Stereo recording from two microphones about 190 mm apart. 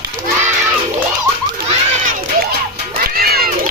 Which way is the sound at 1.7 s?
45° right (ahead or behind).